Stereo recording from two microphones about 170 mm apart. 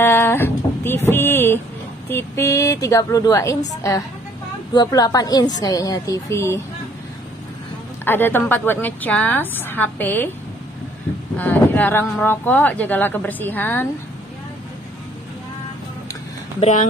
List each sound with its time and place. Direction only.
0.0 s a sound: 15° left (ahead or behind)
2.0 s a woman's voice: 15° left (ahead or behind)
8.0 s speech: 10° left (ahead or behind)
11.3 s speech: 10° left (ahead or behind)
16.5 s speech: 40° left (ahead or behind)